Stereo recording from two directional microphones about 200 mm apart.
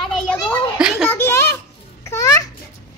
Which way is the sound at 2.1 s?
15° left (ahead or behind).